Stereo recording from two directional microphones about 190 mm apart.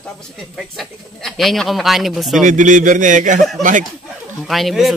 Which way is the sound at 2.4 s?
40° right (ahead or behind).